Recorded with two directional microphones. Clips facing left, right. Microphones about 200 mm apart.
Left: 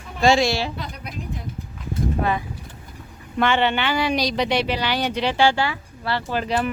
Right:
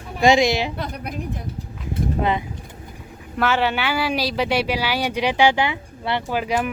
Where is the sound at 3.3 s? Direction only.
5° right (ahead or behind).